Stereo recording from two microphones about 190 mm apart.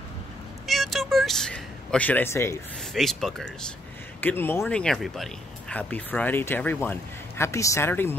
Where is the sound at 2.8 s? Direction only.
Centre (ahead or behind).